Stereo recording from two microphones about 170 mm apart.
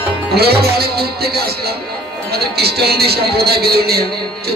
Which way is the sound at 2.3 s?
70° right (ahead or behind).